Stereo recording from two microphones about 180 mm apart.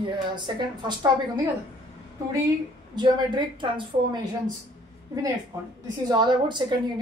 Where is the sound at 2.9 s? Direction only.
25° right (ahead or behind).